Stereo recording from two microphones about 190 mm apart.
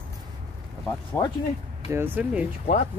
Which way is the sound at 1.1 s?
15° left (ahead or behind).